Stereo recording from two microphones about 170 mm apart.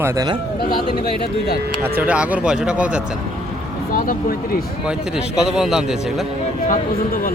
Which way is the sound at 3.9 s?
55° left (ahead or behind).